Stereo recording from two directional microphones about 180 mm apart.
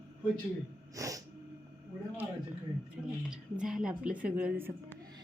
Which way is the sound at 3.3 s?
5° right (ahead or behind).